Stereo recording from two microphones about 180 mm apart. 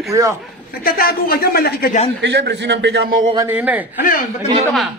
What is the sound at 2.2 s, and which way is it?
A man's voice, 75° right (ahead or behind).